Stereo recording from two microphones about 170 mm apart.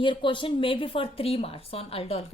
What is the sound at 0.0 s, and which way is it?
A woman's voice, 30° left (ahead or behind).